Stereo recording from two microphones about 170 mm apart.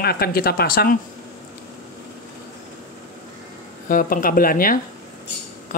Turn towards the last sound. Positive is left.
turn(degrees=55)  # may be behind; listen again after turning